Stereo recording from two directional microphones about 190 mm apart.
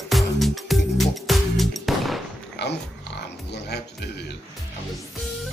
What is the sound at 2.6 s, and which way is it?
Dog, 65° left (ahead or behind).